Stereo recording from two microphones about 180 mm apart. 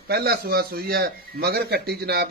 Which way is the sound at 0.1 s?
60° right (ahead or behind).